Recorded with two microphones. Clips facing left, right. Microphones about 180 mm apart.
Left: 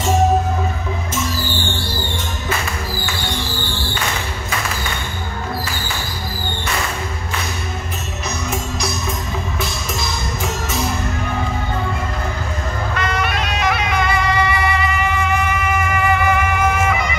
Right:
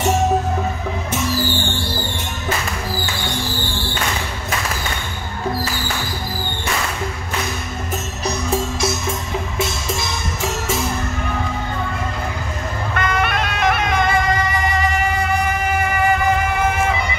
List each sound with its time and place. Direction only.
12.9 s music: 55° right (ahead or behind); by 16.2 s 35° right (ahead or behind)